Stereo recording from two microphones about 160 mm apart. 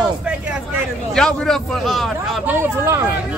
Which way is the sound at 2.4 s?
15° right (ahead or behind).